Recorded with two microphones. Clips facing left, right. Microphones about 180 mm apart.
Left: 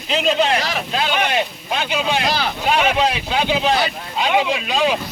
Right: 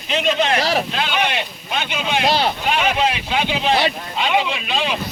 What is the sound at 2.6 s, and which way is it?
Speech, 40° left (ahead or behind).